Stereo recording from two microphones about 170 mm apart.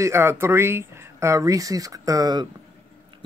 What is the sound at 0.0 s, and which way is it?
Speech, 15° right (ahead or behind).